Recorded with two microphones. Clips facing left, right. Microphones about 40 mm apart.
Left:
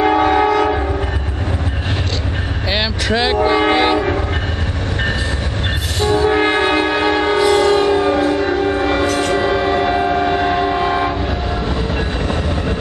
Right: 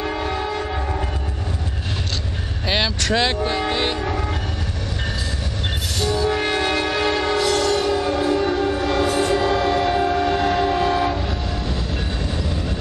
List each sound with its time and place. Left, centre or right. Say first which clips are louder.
0.0 s train: left 11 dB; left
2.7 s vehicle: left 2 dB; centre
3.5 s train: left 8 dB; left
5.9 s train horn: left 7 dB; left
9.0 s train: left 3 dB; left
9.3 s train: left 3 dB; left